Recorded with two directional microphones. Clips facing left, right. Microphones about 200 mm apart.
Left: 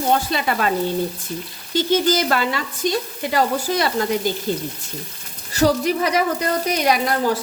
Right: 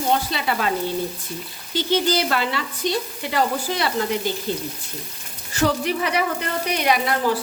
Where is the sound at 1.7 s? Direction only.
45° left (ahead or behind).